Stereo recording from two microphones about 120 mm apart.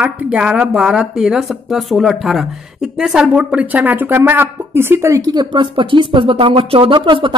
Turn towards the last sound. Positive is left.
turn(degrees=-45)  # may be behind; listen again after turning